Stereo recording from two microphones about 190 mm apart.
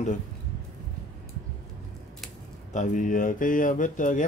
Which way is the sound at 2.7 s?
40° left (ahead or behind).